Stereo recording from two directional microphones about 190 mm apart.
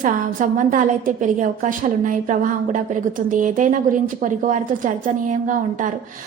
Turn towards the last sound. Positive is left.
turn(degrees=-45)  # may be behind; listen again after turning